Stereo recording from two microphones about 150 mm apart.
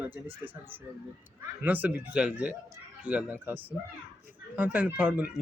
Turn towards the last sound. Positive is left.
turn(degrees=-10)  # may be behind; listen again after turning